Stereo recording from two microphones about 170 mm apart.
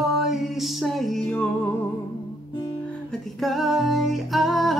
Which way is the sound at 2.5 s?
30° left (ahead or behind).